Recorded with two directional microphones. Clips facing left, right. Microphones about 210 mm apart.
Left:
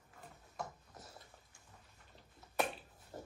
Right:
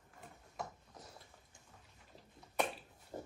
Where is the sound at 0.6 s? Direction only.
Centre (ahead or behind).